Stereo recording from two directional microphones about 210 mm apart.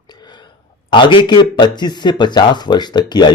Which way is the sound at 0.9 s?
25° left (ahead or behind).